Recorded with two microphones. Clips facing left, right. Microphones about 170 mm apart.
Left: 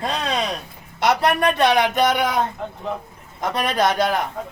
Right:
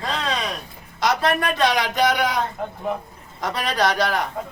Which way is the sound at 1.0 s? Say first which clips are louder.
Left 2 dB; 60° left (ahead or behind).